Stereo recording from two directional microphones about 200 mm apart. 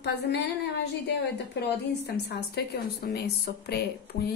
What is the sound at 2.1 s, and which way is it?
A woman's voice, 55° left (ahead or behind).